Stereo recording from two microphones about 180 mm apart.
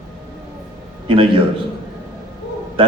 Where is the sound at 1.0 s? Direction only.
30° right (ahead or behind).